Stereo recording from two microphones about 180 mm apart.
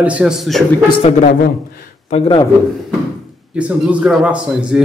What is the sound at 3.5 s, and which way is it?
A man's voice, 5° right (ahead or behind).